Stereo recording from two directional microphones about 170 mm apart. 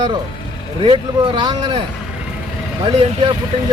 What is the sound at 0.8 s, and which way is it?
Speech, 30° right (ahead or behind).